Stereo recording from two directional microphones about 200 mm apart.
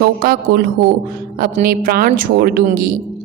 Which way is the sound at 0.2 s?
50° right (ahead or behind).